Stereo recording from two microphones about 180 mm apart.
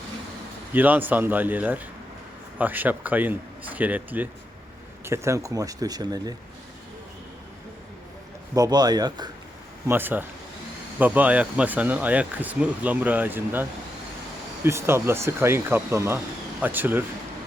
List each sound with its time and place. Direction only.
0.7 s speech: 10° right (ahead or behind)
8.5 s speech: 20° right (ahead or behind)
9.8 s speech: 10° right (ahead or behind)